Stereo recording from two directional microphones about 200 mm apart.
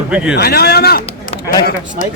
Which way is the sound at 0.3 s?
50° left (ahead or behind).